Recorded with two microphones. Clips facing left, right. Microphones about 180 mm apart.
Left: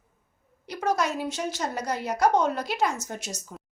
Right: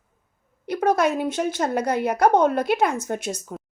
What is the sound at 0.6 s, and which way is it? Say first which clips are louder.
A woman's voice: right 6 dB; 55° right (ahead or behind).